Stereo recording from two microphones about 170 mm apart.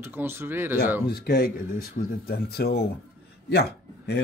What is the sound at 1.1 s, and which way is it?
Speech, 65° left (ahead or behind).